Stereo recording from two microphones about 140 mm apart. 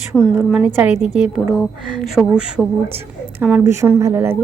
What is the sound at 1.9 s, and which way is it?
Speech, 5° right (ahead or behind).